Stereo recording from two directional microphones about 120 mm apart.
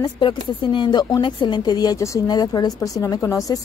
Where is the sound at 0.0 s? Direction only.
40° left (ahead or behind).